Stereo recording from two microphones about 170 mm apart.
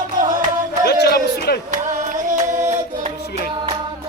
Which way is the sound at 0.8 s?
70° left (ahead or behind).